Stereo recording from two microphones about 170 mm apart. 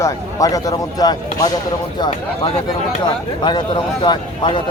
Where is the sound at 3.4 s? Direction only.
25° left (ahead or behind).